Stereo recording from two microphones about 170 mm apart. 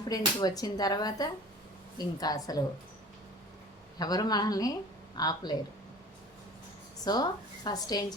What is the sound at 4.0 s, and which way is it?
Speech, 20° left (ahead or behind).